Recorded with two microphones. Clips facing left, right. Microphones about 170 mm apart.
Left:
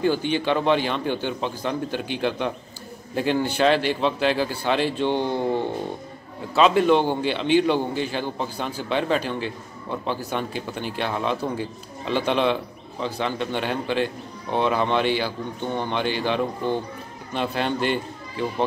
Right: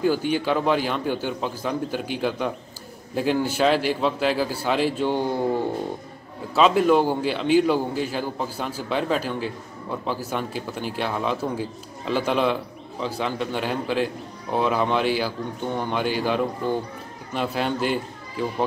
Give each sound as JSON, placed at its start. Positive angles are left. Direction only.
{"t": 0.0, "sound": "a man's voice", "side_deg": -5}